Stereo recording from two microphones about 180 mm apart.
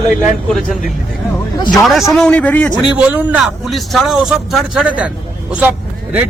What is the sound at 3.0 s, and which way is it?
A man's voice, 5° right (ahead or behind).